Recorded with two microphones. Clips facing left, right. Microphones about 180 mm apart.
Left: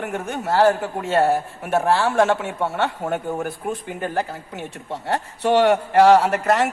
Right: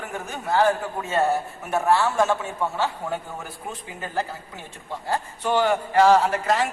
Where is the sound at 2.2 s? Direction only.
75° left (ahead or behind); by 4.2 s 60° left (ahead or behind).